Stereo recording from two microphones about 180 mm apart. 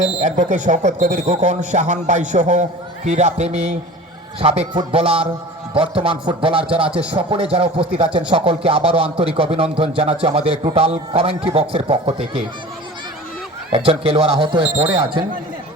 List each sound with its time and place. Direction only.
0.2 s speech: 40° right (ahead or behind)
13.7 s speech: 30° right (ahead or behind)